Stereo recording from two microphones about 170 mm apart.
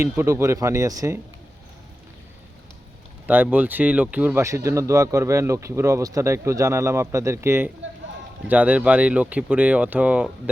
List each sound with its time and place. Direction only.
0.0 s speech: 15° right (ahead or behind)
3.2 s speech: 10° right (ahead or behind)